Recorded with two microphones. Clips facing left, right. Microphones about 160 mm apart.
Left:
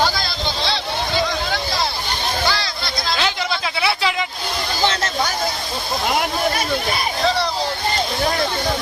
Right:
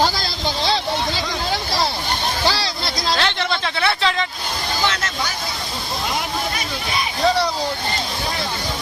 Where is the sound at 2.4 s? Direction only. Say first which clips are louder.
Right 1 dB; 30° right (ahead or behind).